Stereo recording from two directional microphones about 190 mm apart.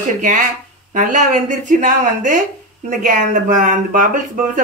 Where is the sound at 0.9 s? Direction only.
40° right (ahead or behind).